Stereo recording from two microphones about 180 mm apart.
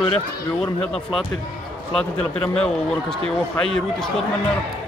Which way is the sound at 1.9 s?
5° left (ahead or behind).